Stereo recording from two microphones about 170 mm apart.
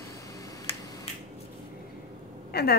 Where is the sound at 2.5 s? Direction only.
70° left (ahead or behind).